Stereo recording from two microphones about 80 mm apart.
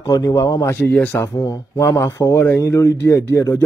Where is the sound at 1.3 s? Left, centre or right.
Left.